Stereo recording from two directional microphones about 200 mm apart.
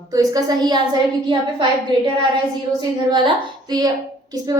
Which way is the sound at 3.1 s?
20° right (ahead or behind).